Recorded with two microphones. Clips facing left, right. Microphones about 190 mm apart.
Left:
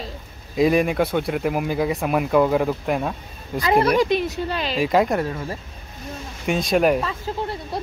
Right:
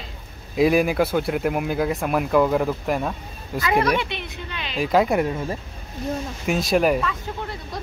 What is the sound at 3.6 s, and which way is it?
Speech, 30° left (ahead or behind).